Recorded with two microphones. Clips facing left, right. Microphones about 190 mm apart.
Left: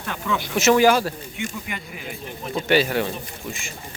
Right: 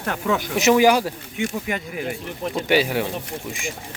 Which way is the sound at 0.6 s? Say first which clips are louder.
Even; 15° right (ahead or behind).